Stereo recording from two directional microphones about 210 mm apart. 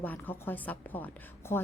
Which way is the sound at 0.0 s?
10° left (ahead or behind).